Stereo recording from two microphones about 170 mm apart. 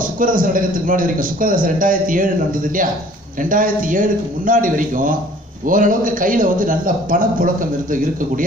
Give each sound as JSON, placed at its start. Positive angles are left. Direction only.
{"t": 0.0, "sound": "a man's voice", "side_deg": -55}